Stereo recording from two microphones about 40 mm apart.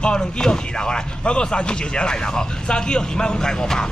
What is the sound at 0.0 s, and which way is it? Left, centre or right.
Speech, left.